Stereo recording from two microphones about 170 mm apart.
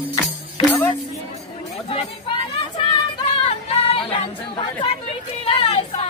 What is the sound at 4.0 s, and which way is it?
Chatter, 30° left (ahead or behind).